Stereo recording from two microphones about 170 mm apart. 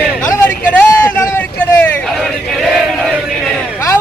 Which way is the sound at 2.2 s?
Centre (ahead or behind).